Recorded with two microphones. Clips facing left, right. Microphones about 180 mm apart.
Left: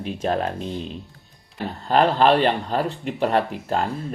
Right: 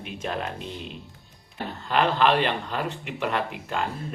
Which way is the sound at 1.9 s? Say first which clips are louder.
Left 5 dB; 40° left (ahead or behind).